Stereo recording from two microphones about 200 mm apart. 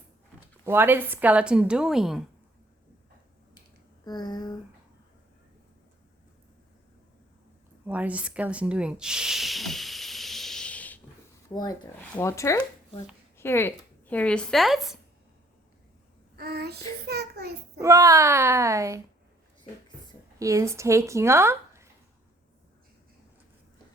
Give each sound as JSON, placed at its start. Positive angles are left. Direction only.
{"t": 0.6, "sound": "speech", "side_deg": -10}
{"t": 4.0, "sound": "speech", "side_deg": 20}
{"t": 7.9, "sound": "speech", "side_deg": -5}
{"t": 11.4, "sound": "speech", "side_deg": 20}
{"t": 16.3, "sound": "child singing", "side_deg": -50}
{"t": 17.1, "sound": "a child's voice", "side_deg": -55}
{"t": 17.7, "sound": "a woman's voice", "side_deg": -15}
{"t": 20.4, "sound": "a woman's voice", "side_deg": -15}